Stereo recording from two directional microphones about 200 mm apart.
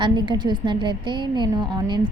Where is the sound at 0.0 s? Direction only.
25° right (ahead or behind).